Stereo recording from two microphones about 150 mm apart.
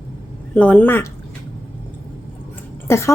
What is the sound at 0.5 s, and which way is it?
Speech, 10° left (ahead or behind).